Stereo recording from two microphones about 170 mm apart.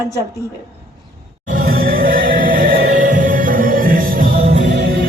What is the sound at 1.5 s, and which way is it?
Music, 60° right (ahead or behind).